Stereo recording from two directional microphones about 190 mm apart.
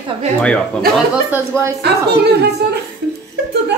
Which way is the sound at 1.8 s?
60° right (ahead or behind).